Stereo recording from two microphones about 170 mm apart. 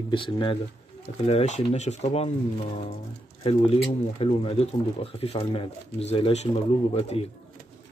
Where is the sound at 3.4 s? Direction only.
30° left (ahead or behind).